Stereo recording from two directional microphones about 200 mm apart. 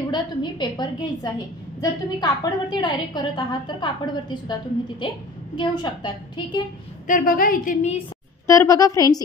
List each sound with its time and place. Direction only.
0.1 s a woman's voice: 20° left (ahead or behind)
5.6 s a woman's voice: 20° left (ahead or behind)
7.1 s a woman's voice: 45° left (ahead or behind)
8.5 s a woman's voice: 15° left (ahead or behind)